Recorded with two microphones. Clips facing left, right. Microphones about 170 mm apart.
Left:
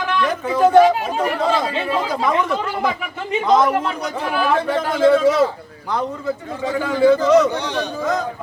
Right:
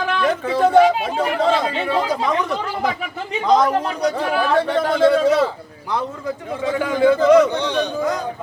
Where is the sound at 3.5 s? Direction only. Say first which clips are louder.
Even; 35° right (ahead or behind).